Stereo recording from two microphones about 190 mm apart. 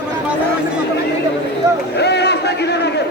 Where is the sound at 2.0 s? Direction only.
60° left (ahead or behind).